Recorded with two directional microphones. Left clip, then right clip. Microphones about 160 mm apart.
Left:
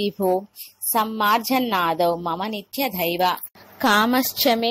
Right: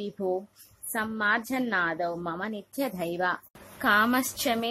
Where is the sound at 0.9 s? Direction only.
15° left (ahead or behind).